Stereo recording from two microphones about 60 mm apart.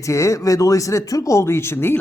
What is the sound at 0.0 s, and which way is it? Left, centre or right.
Speech, left.